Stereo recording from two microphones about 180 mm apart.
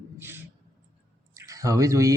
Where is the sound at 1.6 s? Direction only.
20° right (ahead or behind).